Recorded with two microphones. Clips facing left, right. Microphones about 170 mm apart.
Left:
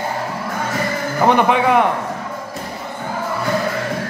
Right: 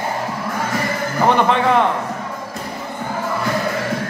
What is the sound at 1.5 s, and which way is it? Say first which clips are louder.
Speech: left 1 dB; 10° left (ahead or behind).